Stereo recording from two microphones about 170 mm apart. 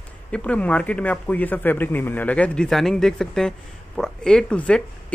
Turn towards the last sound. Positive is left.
turn(degrees=5)  # may be behind; listen again after turning